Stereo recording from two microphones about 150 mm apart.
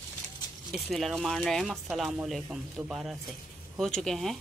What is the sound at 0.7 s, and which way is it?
Speech, centre (ahead or behind).